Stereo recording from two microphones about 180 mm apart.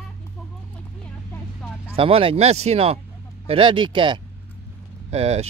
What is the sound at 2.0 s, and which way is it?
Speech, 30° right (ahead or behind).